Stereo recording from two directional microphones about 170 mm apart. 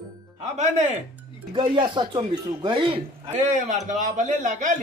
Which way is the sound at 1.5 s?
30° right (ahead or behind).